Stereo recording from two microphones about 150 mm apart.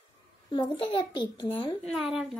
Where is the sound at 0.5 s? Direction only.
30° left (ahead or behind).